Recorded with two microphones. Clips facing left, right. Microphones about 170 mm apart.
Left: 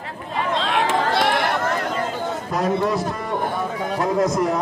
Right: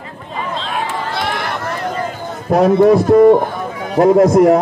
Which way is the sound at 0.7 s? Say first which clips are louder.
Left 2 dB; 90° left.